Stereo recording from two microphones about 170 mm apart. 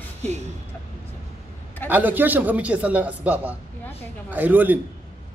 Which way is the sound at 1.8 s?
10° right (ahead or behind).